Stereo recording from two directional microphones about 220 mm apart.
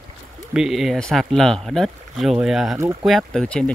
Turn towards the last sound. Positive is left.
turn(degrees=5)  # may be behind; listen again after turning